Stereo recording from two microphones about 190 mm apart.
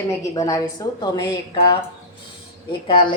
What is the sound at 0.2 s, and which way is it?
A woman's voice, 15° left (ahead or behind).